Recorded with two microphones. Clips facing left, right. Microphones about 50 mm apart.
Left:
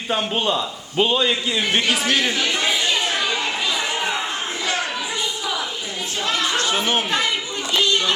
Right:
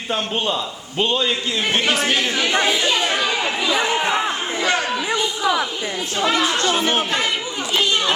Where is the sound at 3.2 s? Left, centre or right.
Centre.